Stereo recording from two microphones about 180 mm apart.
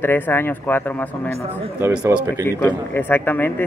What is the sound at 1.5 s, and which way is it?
Speech, 10° right (ahead or behind).